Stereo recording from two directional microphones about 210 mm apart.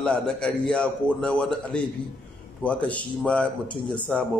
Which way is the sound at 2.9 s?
5° left (ahead or behind).